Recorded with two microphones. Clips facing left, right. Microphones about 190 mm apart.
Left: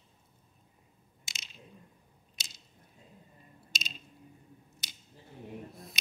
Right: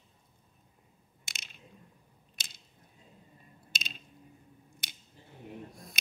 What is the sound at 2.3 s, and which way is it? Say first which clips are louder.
Squish: even; 55° right (ahead or behind).